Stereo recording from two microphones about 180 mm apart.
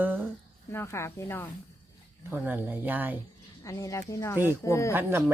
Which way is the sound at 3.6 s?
20° left (ahead or behind).